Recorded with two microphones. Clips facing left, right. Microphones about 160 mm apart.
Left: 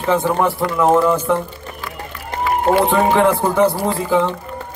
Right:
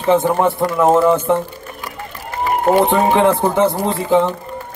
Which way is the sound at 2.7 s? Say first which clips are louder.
Right 1 dB; 20° right (ahead or behind).